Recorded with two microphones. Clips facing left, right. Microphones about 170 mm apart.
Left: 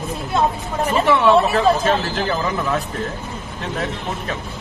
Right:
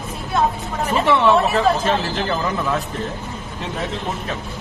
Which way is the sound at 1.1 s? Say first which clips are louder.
Left 1 dB; centre (ahead or behind).